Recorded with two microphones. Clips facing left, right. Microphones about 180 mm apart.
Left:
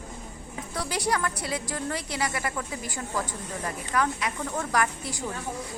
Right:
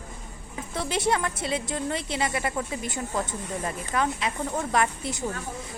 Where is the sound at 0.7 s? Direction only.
25° right (ahead or behind).